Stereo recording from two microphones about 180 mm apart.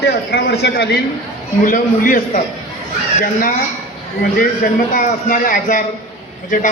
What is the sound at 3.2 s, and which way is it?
Speech, 50° left (ahead or behind).